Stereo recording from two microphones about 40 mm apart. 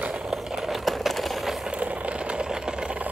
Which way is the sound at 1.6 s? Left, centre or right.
Right.